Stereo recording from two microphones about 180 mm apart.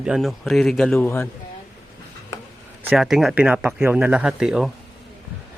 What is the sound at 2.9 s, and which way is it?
Speech, centre (ahead or behind).